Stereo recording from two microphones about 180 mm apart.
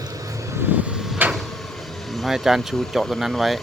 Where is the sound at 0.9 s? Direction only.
5° right (ahead or behind).